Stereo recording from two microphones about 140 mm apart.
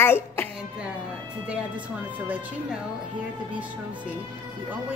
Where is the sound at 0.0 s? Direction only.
15° left (ahead or behind).